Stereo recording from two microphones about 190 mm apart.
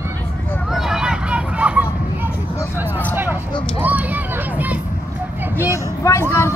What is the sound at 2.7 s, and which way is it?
Speech, 10° right (ahead or behind).